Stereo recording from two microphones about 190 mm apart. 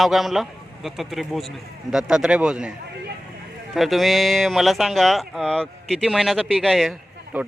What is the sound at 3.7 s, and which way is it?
Speech, centre (ahead or behind).